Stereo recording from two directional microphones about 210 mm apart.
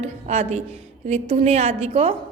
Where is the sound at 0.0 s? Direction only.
30° right (ahead or behind).